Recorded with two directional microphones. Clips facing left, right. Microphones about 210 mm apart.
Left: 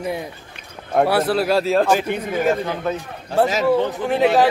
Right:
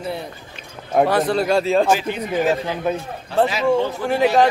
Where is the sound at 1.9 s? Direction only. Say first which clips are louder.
Left 1 dB; 50° left (ahead or behind).